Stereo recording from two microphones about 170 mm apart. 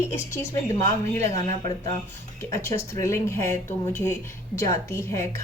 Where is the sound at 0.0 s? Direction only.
15° left (ahead or behind).